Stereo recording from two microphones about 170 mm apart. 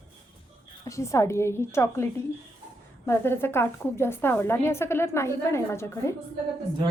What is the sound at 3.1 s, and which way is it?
A woman's voice, 15° left (ahead or behind).